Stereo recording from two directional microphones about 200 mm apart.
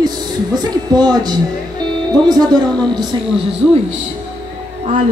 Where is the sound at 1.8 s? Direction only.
20° right (ahead or behind).